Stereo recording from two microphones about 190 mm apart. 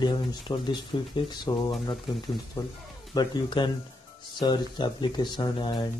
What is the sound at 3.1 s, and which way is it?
Speech, 20° left (ahead or behind).